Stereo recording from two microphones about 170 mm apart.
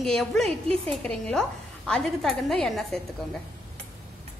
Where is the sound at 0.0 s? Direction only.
Centre (ahead or behind).